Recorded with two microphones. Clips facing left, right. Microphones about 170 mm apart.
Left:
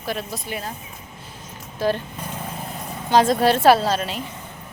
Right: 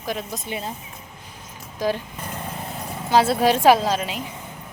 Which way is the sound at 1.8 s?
15° right (ahead or behind).